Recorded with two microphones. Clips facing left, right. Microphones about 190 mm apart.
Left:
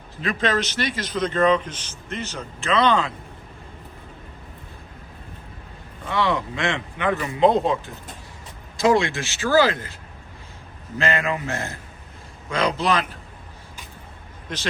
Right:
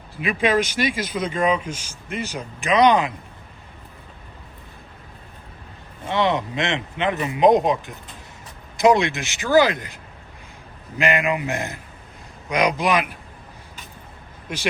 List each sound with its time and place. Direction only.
0.2 s a man's voice: 10° right (ahead or behind)
6.1 s a man's voice: 20° right (ahead or behind)